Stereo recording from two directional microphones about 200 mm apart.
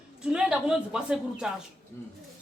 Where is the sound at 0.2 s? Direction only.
5° right (ahead or behind).